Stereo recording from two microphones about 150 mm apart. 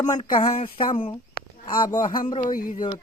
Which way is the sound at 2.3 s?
35° left (ahead or behind).